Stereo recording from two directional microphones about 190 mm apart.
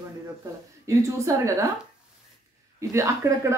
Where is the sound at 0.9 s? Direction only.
15° right (ahead or behind).